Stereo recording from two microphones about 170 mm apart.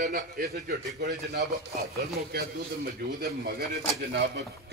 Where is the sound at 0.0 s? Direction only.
55° right (ahead or behind).